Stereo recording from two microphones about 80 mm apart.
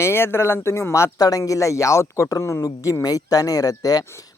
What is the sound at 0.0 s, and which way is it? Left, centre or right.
Speech, left.